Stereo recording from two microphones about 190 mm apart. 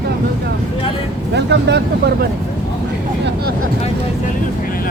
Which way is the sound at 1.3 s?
65° right (ahead or behind).